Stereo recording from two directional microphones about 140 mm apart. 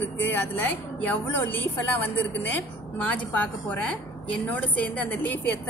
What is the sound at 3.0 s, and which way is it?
A woman's voice, 10° left (ahead or behind).